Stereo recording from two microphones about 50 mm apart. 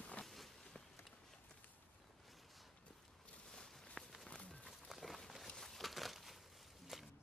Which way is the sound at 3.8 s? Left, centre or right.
Centre.